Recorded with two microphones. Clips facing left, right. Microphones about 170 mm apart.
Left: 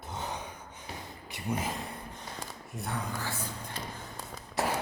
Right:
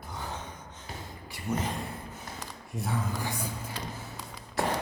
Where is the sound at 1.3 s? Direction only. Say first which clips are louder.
Right 1 dB; 20° left (ahead or behind).